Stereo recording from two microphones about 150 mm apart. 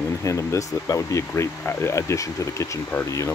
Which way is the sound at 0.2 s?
20° left (ahead or behind).